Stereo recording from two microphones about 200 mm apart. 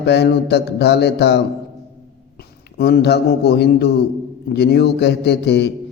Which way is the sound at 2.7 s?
50° left (ahead or behind).